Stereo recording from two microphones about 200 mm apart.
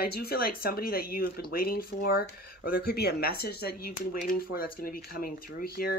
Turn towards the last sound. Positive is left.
turn(degrees=50)  # may be behind; listen again after turning